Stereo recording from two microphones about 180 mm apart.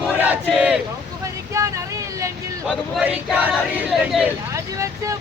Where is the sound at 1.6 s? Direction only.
15° right (ahead or behind).